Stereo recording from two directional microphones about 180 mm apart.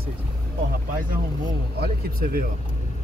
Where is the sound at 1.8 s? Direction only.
55° right (ahead or behind).